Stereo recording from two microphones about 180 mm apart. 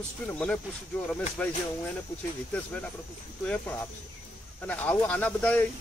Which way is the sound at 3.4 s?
10° left (ahead or behind).